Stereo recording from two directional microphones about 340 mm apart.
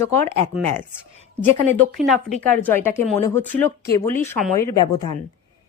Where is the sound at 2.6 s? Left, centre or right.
Centre.